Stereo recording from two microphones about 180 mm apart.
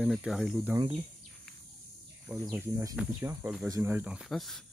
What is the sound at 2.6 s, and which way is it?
Cricket, 15° right (ahead or behind).